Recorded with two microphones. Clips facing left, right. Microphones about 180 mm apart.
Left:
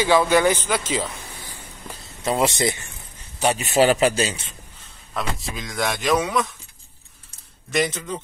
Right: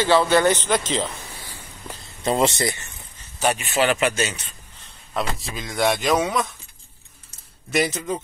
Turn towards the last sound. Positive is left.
turn(degrees=-5)  # may be behind; listen again after turning